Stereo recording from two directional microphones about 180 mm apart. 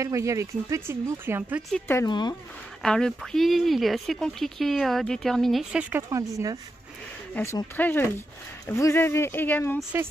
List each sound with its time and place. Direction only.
0.0 s speech: 15° right (ahead or behind)
1.7 s speech: 10° left (ahead or behind)
2.0 s speech: 25° left (ahead or behind)
2.8 s speech: 5° left (ahead or behind)
6.0 s speech: 20° right (ahead or behind)
7.4 s speech: 10° left (ahead or behind)